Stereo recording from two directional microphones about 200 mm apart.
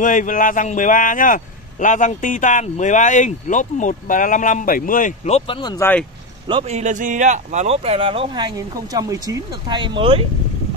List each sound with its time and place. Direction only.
0.0 s speech: 40° left (ahead or behind)
5.6 s speech: 20° left (ahead or behind)
6.4 s speech: 30° right (ahead or behind)